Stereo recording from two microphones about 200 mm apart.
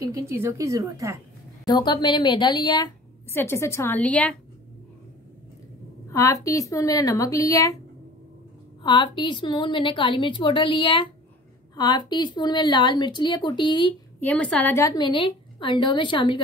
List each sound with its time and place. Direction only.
0.0 s a woman's voice: 15° right (ahead or behind)
1.7 s a woman's voice: 20° left (ahead or behind)
6.1 s a woman's voice: 15° left (ahead or behind)
8.8 s a woman's voice: 25° left (ahead or behind)
14.2 s a woman's voice: 5° left (ahead or behind); by 16.3 s 25° left (ahead or behind)